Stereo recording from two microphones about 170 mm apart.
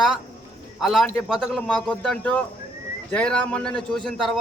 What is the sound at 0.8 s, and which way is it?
A man's voice, centre (ahead or behind).